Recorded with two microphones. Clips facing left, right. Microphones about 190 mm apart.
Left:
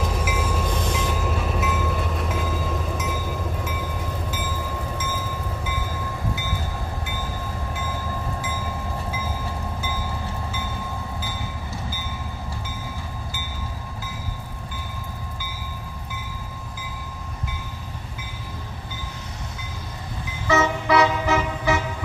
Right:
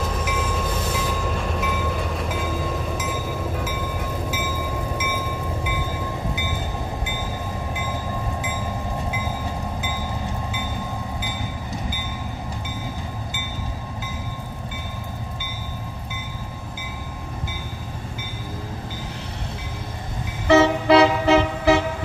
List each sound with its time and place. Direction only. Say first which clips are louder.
0.1 s train: even; 5° left (ahead or behind)
0.7 s train: even; 5° right (ahead or behind)
4.9 s train: right 3 dB; 10° right (ahead or behind)
9.8 s train: right 2 dB; 15° right (ahead or behind)
20.4 s music: right 6 dB; 30° right (ahead or behind)